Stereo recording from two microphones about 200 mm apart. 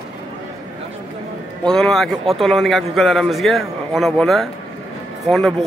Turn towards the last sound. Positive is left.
turn(degrees=0)  # may be behind; listen again after turning